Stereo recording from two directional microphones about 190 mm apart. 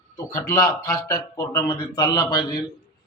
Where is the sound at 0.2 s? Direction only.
15° left (ahead or behind).